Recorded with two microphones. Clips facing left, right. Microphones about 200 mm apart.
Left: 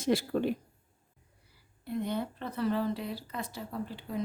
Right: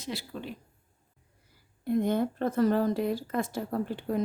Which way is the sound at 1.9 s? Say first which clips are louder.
Right 7 dB; 45° right (ahead or behind).